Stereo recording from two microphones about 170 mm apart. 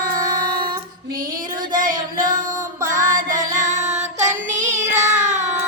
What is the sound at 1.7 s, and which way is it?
Child singing, 55° right (ahead or behind).